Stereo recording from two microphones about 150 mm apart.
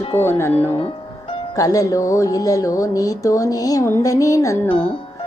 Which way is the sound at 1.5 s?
25° left (ahead or behind).